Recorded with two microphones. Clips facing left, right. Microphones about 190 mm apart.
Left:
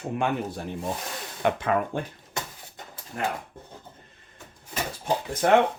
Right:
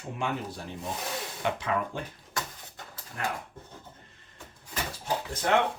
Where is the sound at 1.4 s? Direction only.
55° left (ahead or behind).